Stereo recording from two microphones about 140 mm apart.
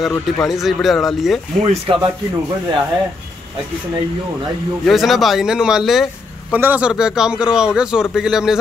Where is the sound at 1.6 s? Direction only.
40° right (ahead or behind).